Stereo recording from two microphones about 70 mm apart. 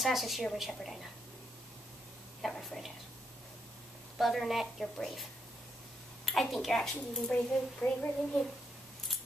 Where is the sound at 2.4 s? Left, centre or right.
Centre.